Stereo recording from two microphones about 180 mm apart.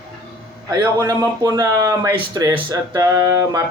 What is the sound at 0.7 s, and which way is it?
Speech, 20° right (ahead or behind).